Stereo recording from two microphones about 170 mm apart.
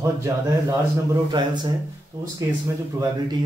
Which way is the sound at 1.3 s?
25° right (ahead or behind).